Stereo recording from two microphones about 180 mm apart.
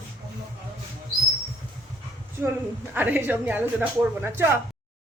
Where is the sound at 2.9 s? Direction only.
10° right (ahead or behind).